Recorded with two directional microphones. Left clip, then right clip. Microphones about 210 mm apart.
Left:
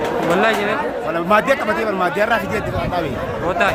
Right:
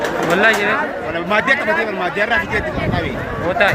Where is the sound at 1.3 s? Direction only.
20° left (ahead or behind).